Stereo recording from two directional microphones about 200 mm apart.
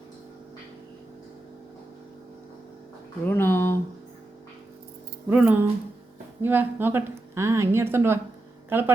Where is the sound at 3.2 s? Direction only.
10° left (ahead or behind).